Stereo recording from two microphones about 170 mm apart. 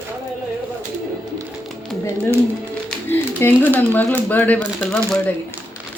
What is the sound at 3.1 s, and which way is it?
Speech, 10° left (ahead or behind).